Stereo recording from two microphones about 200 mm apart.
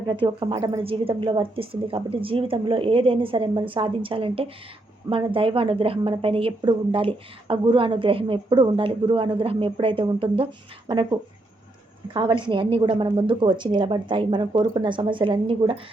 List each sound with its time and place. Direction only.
0.1 s a woman's voice: 25° right (ahead or behind)